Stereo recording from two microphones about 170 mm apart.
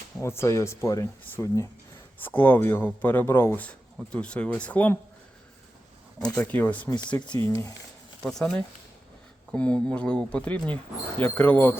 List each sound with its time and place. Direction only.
0.2 s speech: 15° left (ahead or behind)
6.1 s speech: 5° left (ahead or behind)
8.2 s speech: centre (ahead or behind)